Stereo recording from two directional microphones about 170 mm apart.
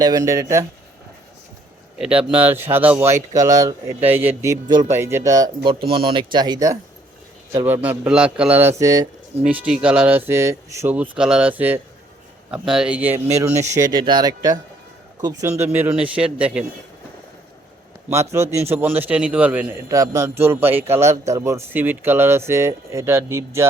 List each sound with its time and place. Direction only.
0.0 s speech: 20° right (ahead or behind)
2.0 s speech: 5° right (ahead or behind); by 6.7 s 20° right (ahead or behind)
7.5 s speech: 10° right (ahead or behind)
9.4 s speech: 5° right (ahead or behind)
18.1 s speech: 15° right (ahead or behind)